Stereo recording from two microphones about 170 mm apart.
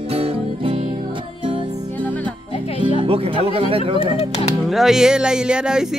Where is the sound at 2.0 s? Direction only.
10° left (ahead or behind).